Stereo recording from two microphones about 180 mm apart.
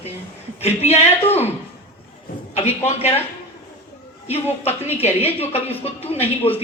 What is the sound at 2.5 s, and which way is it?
Speech, 35° left (ahead or behind).